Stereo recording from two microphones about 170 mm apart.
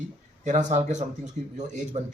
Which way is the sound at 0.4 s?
45° right (ahead or behind).